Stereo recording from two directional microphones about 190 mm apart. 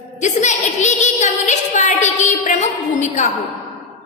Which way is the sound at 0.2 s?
40° left (ahead or behind).